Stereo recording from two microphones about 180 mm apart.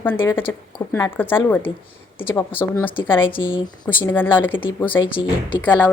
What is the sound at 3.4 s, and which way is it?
Speech, 25° left (ahead or behind).